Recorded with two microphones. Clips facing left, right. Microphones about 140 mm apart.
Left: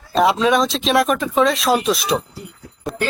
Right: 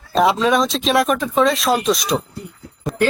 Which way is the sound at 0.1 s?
Centre (ahead or behind).